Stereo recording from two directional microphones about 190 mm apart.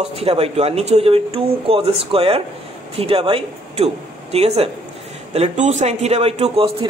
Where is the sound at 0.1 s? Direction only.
30° right (ahead or behind).